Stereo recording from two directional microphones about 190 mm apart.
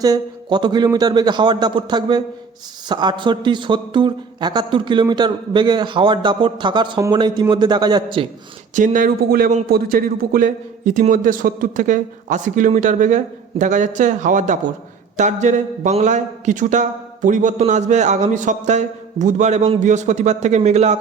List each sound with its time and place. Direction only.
0.0 s a man's voice: 20° right (ahead or behind)
8.7 s a man's voice: 45° right (ahead or behind)